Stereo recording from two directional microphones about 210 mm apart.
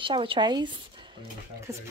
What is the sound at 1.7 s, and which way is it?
Speech, 15° right (ahead or behind).